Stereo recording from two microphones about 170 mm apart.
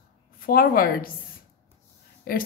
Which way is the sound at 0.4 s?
60° left (ahead or behind).